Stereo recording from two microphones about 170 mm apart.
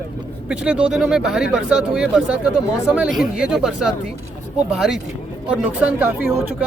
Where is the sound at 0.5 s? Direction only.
5° right (ahead or behind).